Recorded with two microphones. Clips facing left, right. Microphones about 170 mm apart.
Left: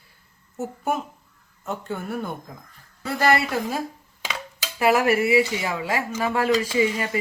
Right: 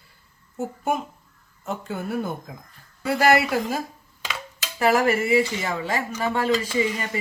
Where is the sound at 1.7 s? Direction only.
Centre (ahead or behind).